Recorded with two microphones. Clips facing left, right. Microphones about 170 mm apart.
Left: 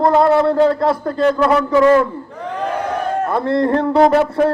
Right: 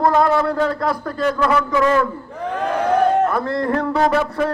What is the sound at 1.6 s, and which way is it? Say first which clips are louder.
Speech: left 5 dB; 30° left (ahead or behind).